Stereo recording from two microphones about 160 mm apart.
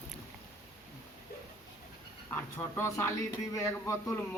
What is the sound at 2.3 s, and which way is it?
A man's voice, 15° left (ahead or behind).